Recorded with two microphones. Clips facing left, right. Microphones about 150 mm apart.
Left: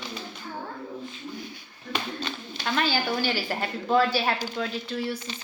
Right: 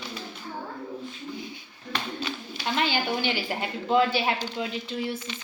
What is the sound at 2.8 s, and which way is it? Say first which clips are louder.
A woman's voice: left 1 dB; 20° right (ahead or behind).